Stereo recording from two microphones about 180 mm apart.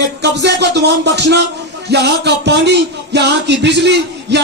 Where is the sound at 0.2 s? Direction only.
70° right (ahead or behind).